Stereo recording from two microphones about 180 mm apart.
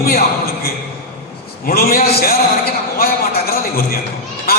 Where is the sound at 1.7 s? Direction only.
55° left (ahead or behind).